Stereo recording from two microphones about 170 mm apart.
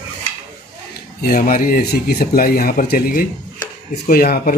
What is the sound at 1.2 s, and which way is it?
Speech, 55° left (ahead or behind).